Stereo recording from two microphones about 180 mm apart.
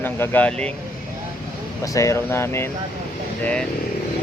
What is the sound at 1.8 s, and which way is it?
Speech, 15° left (ahead or behind).